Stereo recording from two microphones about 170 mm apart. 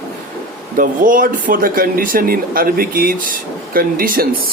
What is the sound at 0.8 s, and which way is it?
Speech, 55° right (ahead or behind).